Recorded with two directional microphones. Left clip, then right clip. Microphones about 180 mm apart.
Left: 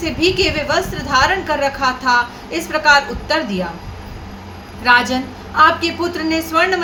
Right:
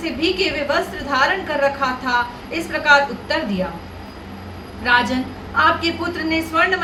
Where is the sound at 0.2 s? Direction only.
25° left (ahead or behind).